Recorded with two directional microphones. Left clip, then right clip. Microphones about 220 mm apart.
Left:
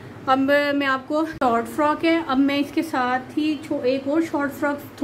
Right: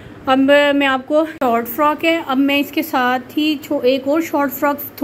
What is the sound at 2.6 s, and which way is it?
Speech, 15° right (ahead or behind).